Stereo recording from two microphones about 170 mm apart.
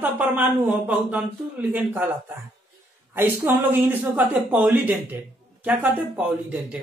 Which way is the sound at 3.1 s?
15° right (ahead or behind).